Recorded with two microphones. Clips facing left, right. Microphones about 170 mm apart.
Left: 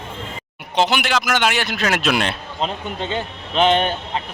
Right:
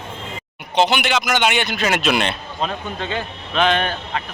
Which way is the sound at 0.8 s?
Centre (ahead or behind).